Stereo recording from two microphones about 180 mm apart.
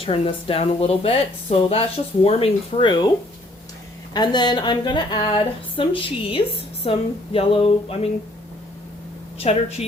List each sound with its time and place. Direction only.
0.0 s speech: 30° left (ahead or behind)
4.1 s speech: 25° left (ahead or behind)
9.4 s speech: 35° left (ahead or behind)